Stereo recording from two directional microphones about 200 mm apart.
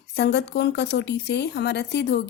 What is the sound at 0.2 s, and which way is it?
Speech, 60° left (ahead or behind).